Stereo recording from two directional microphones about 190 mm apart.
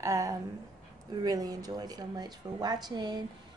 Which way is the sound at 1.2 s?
20° right (ahead or behind).